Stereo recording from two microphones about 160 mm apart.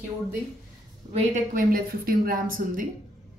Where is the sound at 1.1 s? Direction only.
55° right (ahead or behind).